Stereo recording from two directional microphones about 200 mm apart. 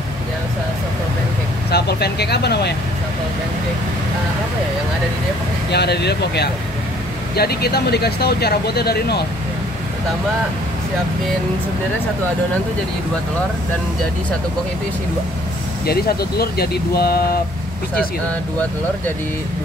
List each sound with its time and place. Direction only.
1.7 s speech: 55° left (ahead or behind)
5.7 s speech: 55° left (ahead or behind)
15.8 s speech: 50° left (ahead or behind)